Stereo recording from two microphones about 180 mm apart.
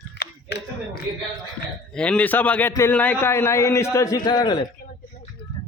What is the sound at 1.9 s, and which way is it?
A man's voice, 5° left (ahead or behind).